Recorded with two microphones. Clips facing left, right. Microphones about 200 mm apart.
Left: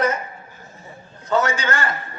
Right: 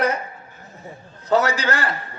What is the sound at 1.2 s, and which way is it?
Speech, 35° right (ahead or behind).